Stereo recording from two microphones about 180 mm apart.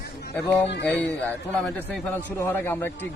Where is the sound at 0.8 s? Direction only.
10° left (ahead or behind).